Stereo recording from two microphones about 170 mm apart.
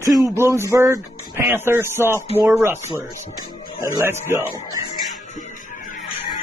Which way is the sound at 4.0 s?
15° right (ahead or behind).